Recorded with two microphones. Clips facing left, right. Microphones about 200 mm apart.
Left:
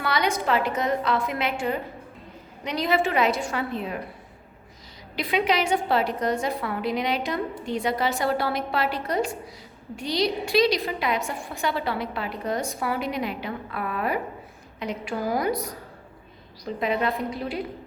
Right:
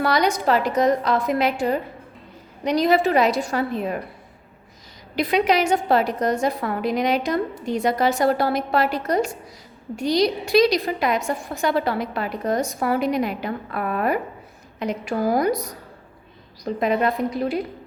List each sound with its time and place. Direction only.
0.0 s a woman's voice: 40° right (ahead or behind)
5.1 s a woman's voice: 45° right (ahead or behind)
16.6 s a woman's voice: 50° right (ahead or behind)